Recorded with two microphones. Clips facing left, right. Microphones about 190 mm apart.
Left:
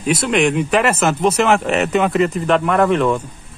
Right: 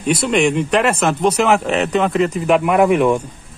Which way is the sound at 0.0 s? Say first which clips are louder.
Right 1 dB; centre (ahead or behind).